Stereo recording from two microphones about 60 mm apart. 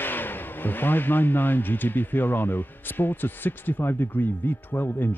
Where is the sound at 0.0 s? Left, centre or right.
Left.